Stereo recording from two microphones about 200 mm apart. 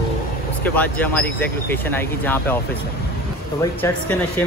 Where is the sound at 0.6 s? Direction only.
10° left (ahead or behind).